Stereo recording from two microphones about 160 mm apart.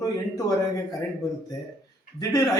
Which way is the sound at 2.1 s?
20° left (ahead or behind).